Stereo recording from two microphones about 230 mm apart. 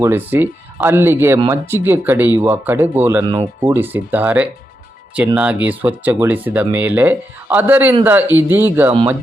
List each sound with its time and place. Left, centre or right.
0.0 s speech: centre